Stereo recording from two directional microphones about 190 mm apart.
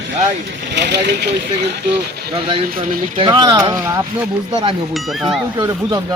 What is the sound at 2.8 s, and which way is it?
Speech, 25° right (ahead or behind).